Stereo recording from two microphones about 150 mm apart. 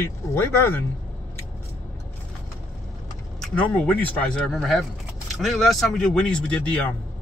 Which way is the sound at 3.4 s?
5° left (ahead or behind).